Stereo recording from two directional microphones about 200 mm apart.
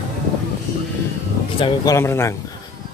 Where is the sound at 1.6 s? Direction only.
15° left (ahead or behind).